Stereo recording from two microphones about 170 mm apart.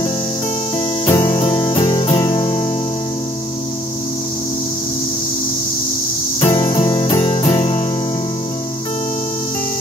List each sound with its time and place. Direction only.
1.0 s music: 25° left (ahead or behind)
6.4 s music: 30° left (ahead or behind)